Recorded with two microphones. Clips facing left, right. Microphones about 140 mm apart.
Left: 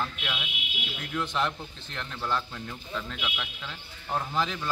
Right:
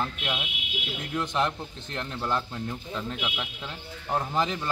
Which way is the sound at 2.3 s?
30° right (ahead or behind).